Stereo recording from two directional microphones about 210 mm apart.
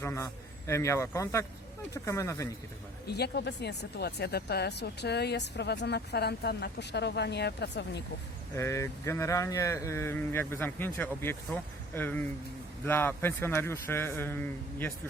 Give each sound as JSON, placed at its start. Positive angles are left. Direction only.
{"t": 0.0, "sound": "speech", "side_deg": 15}
{"t": 3.1, "sound": "speech", "side_deg": 50}
{"t": 8.5, "sound": "speech", "side_deg": 15}